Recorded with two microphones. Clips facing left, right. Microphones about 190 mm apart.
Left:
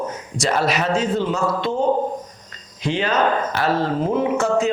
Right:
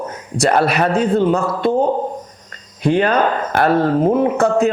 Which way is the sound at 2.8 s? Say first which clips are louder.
Right 5 dB; 55° right (ahead or behind).